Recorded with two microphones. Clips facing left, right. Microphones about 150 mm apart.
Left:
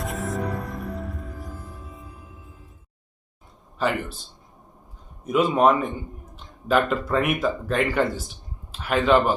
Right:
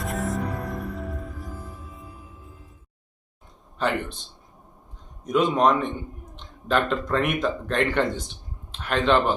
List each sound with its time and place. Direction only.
0.0 s music: centre (ahead or behind)
3.8 s speech: 5° left (ahead or behind)
5.2 s a man's voice: 5° left (ahead or behind)